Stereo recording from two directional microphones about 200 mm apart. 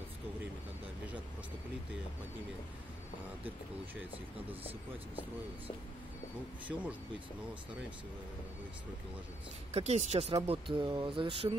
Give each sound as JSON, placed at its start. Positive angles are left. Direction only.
{"t": 6.7, "sound": "speech", "side_deg": 0}
{"t": 9.7, "sound": "speech", "side_deg": -30}